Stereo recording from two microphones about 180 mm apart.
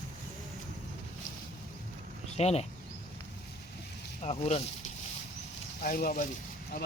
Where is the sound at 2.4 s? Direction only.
35° left (ahead or behind).